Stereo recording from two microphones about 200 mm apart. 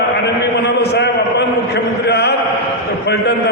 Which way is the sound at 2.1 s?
55° left (ahead or behind).